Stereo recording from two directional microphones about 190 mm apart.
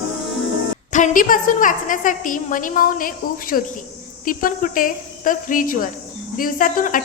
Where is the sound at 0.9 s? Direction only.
45° left (ahead or behind).